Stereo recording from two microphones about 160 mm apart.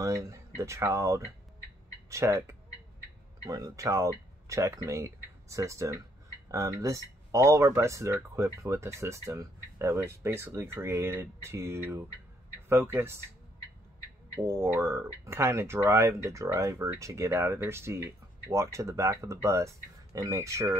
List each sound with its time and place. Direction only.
0.0 s speech: 20° right (ahead or behind)
14.3 s speech: 15° right (ahead or behind)